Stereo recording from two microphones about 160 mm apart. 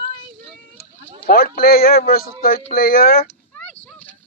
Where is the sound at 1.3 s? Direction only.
65° left (ahead or behind).